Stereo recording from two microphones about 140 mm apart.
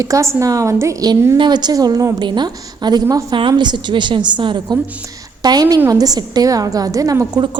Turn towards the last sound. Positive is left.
turn(degrees=-25)  # may be behind; listen again after turning